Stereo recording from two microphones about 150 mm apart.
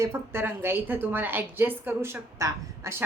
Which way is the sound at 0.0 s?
15° right (ahead or behind).